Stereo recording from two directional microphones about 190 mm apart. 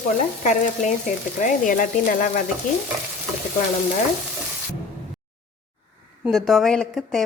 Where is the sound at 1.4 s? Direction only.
45° left (ahead or behind).